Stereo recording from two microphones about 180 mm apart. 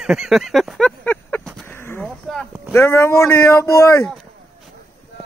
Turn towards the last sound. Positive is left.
turn(degrees=15)  # may be behind; listen again after turning